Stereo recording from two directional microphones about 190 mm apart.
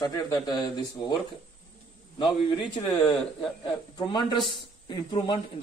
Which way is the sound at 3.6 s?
25° left (ahead or behind).